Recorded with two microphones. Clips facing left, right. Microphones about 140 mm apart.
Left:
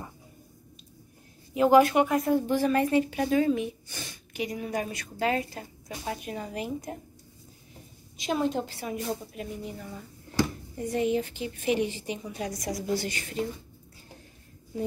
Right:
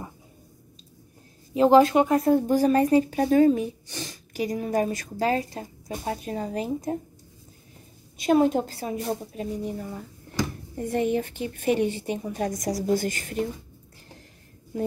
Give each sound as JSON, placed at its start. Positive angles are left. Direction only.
{"t": 1.5, "sound": "speech", "side_deg": -30}
{"t": 8.2, "sound": "a woman's voice", "side_deg": -50}
{"t": 10.8, "sound": "a woman's voice", "side_deg": -55}